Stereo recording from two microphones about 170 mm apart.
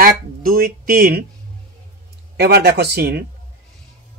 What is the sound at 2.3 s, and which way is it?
Speech, 75° right (ahead or behind).